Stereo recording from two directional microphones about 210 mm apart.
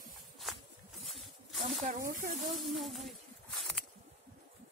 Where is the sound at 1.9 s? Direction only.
35° right (ahead or behind).